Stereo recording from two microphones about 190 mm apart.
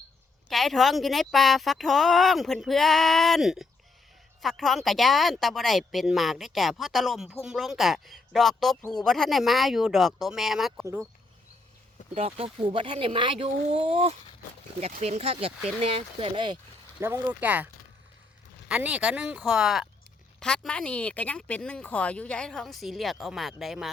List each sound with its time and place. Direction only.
0.4 s speech: centre (ahead or behind)
12.1 s speech: 30° right (ahead or behind)
17.0 s speech: 15° right (ahead or behind)
18.7 s speech: 5° right (ahead or behind)